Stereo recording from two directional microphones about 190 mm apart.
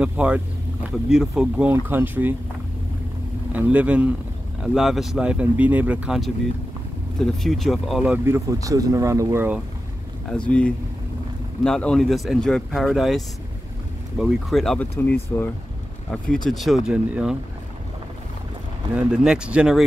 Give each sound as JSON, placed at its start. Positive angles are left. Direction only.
{"t": 0.0, "sound": "speech", "side_deg": -5}
{"t": 3.5, "sound": "speech", "side_deg": -5}
{"t": 8.5, "sound": "speech", "side_deg": -15}
{"t": 10.3, "sound": "speech", "side_deg": 5}
{"t": 16.4, "sound": "speech", "side_deg": 0}
{"t": 18.9, "sound": "speech", "side_deg": -5}